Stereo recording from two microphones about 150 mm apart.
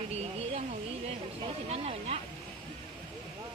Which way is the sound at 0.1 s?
45° right (ahead or behind).